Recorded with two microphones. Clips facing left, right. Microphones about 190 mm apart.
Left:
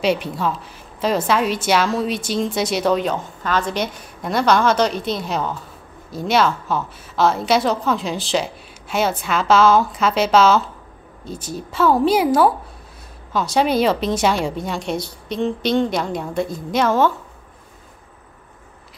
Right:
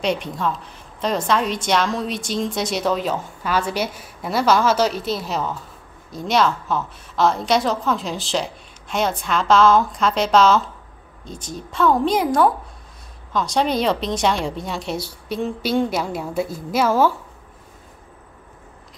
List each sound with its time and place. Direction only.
0.0 s a woman's voice: 5° left (ahead or behind)